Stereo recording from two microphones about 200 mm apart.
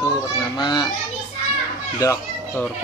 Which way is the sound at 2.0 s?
15° left (ahead or behind).